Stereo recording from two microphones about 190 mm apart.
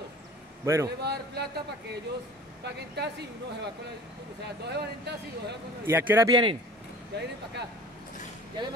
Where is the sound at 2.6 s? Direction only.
60° right (ahead or behind).